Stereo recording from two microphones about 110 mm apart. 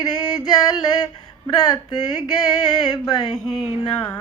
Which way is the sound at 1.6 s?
40° left (ahead or behind).